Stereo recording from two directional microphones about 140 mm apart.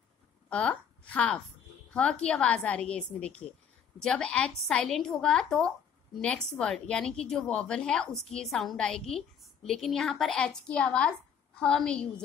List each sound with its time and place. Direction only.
0.5 s a woman's voice: 10° left (ahead or behind)